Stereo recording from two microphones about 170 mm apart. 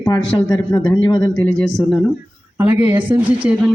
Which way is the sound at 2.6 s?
10° right (ahead or behind).